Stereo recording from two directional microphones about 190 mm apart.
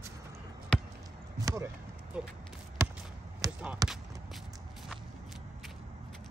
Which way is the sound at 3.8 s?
20° right (ahead or behind).